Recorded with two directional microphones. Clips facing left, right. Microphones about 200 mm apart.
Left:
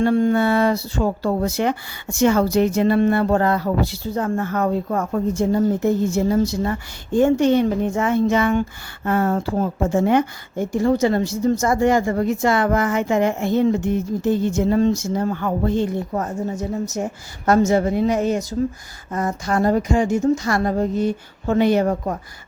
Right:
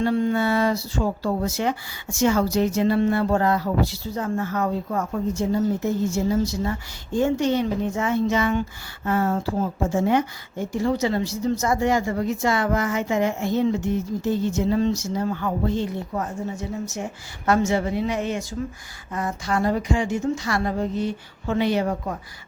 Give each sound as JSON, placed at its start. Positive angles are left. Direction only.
{"t": 0.0, "sound": "speech", "side_deg": 50}